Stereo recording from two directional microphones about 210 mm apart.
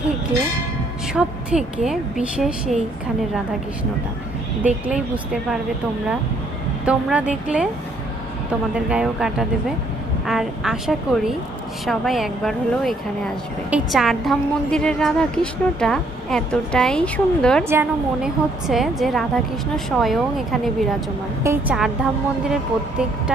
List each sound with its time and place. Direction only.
1.1 s a woman's voice: 5° right (ahead or behind)
4.6 s a woman's voice: 5° right (ahead or behind)
6.8 s a woman's voice: 5° right (ahead or behind)
17.7 s a woman's voice: 10° right (ahead or behind)
18.7 s a woman's voice: centre (ahead or behind)